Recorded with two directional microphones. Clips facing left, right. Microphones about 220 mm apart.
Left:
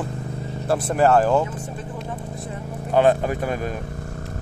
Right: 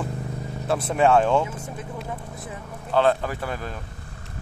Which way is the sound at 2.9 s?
15° left (ahead or behind).